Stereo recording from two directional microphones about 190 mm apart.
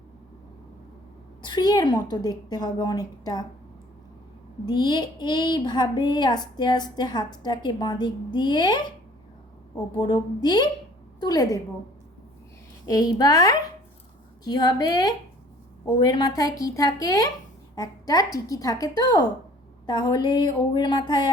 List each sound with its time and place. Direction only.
1.4 s speech: 25° left (ahead or behind)
4.6 s speech: 25° left (ahead or behind)
9.9 s speech: 25° left (ahead or behind)
12.9 s speech: 20° left (ahead or behind)